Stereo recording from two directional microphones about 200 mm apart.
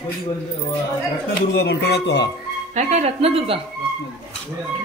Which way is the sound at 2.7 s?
35° right (ahead or behind).